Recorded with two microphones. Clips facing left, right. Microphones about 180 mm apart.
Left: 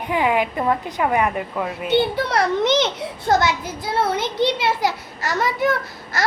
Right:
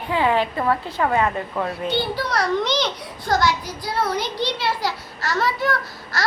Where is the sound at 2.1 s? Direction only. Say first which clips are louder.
Left 2 dB; 25° left (ahead or behind).